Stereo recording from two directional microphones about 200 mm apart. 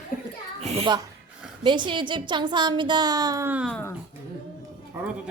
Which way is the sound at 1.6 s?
25° right (ahead or behind).